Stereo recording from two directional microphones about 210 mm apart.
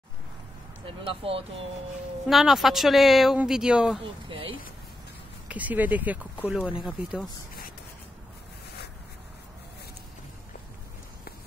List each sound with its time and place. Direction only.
0.8 s speech: 25° right (ahead or behind)
2.2 s speech: centre (ahead or behind)
4.0 s speech: 25° right (ahead or behind)
5.5 s speech: 5° right (ahead or behind)